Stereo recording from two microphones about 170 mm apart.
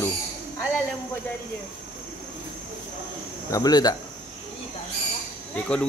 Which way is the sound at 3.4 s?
20° left (ahead or behind).